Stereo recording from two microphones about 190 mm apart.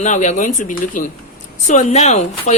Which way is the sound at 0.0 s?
40° left (ahead or behind).